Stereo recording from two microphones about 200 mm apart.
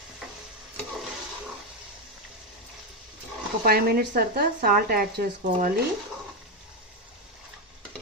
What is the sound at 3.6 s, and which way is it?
Speech, 50° right (ahead or behind).